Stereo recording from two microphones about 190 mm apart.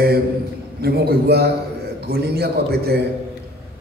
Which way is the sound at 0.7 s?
55° right (ahead or behind).